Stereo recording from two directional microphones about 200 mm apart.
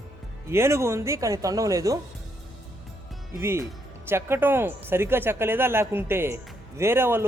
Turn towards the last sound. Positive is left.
turn(degrees=-10)  # may be behind; listen again after turning